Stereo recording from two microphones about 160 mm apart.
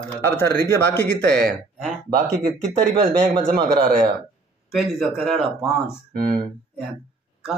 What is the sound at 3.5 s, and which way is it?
Speech, 70° right (ahead or behind).